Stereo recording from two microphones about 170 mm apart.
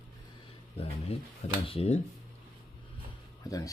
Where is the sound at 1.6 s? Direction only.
35° left (ahead or behind).